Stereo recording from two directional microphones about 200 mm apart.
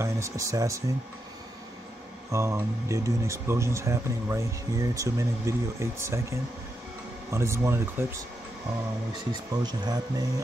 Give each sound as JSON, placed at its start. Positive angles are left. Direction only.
{"t": 0.0, "sound": "speech", "side_deg": -15}
{"t": 2.3, "sound": "speech", "side_deg": -15}
{"t": 7.2, "sound": "speech", "side_deg": -15}
{"t": 9.3, "sound": "speech", "side_deg": -20}